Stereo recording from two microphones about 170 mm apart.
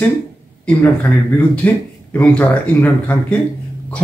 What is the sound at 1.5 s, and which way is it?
Speech, 10° left (ahead or behind).